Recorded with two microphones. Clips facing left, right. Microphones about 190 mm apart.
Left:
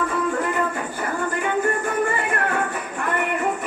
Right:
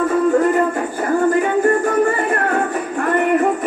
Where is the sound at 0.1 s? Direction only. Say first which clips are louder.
Right 9 dB; 40° right (ahead or behind).